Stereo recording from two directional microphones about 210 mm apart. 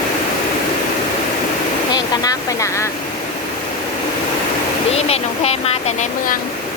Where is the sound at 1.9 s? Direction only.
20° left (ahead or behind).